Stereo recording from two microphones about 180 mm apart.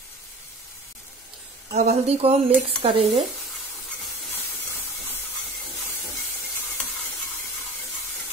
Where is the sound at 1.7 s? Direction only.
40° right (ahead or behind).